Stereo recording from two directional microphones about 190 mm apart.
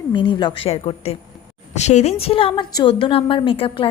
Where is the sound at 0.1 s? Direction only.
25° left (ahead or behind).